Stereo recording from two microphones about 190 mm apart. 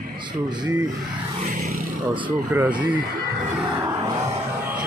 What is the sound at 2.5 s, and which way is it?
Speech, 10° right (ahead or behind).